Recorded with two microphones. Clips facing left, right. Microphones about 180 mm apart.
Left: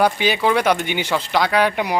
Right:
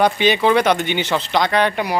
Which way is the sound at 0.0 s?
5° left (ahead or behind).